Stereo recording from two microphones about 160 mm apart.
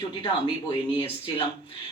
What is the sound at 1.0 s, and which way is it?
Speech, 35° left (ahead or behind).